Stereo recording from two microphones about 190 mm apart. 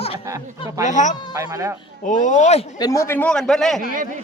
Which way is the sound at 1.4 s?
15° right (ahead or behind).